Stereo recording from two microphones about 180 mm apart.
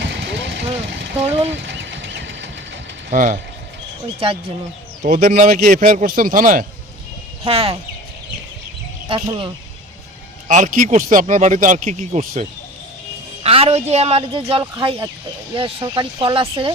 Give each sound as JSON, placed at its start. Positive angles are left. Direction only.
{"t": 0.0, "sound": "vehicle", "side_deg": -80}
{"t": 1.2, "sound": "speech", "side_deg": -35}
{"t": 1.5, "sound": "a sound", "side_deg": -85}
{"t": 3.1, "sound": "speech", "side_deg": -45}
{"t": 5.0, "sound": "speech", "side_deg": -40}
{"t": 7.4, "sound": "speech", "side_deg": -30}
{"t": 9.0, "sound": "speech", "side_deg": -25}
{"t": 10.5, "sound": "a woman's voice", "side_deg": -45}